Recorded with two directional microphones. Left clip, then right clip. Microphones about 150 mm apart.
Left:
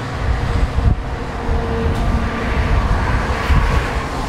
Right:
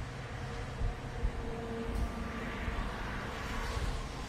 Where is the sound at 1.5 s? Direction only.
35° left (ahead or behind).